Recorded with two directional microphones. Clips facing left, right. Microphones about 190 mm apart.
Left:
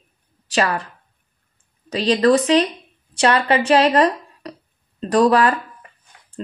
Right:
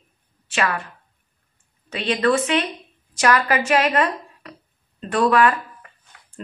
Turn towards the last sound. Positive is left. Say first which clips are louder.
# even
turn(degrees=35)  # may be behind; listen again after turning